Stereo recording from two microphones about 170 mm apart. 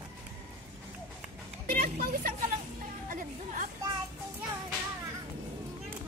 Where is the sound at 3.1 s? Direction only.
55° right (ahead or behind).